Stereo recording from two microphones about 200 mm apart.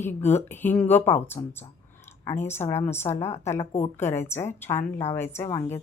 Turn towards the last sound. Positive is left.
turn(degrees=15)  # may be behind; listen again after turning